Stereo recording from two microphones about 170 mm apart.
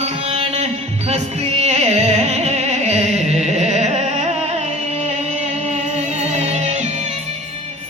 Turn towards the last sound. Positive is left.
turn(degrees=-40)  # may be behind; listen again after turning